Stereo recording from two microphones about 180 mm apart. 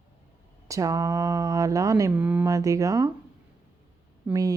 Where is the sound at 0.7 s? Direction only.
20° right (ahead or behind).